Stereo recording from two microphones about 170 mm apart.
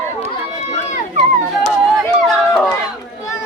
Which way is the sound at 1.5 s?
Centre (ahead or behind).